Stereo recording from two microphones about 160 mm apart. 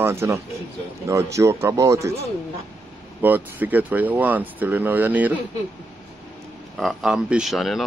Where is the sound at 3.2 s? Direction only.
10° right (ahead or behind).